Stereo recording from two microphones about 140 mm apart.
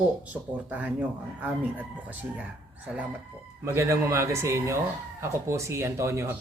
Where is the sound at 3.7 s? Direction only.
20° right (ahead or behind).